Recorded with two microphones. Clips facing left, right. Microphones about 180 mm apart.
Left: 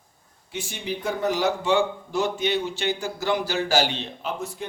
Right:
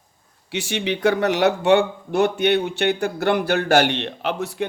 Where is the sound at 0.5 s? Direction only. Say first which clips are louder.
Right 7 dB; 75° right (ahead or behind).